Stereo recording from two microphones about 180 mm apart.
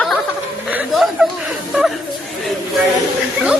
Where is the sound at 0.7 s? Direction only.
5° right (ahead or behind).